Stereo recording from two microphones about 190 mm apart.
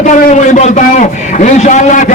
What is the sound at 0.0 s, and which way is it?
A man's voice, 40° left (ahead or behind).